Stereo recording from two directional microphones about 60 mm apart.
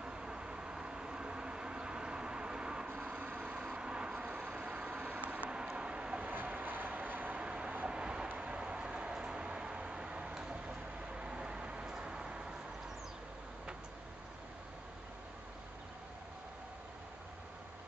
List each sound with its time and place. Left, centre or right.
0.0 s vehicle: centre
3.1 s vehicle: right
6.3 s vehicle: right; by 12.4 s centre